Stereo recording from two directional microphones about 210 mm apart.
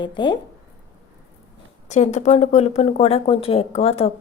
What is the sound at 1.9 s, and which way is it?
A woman's voice, 35° left (ahead or behind).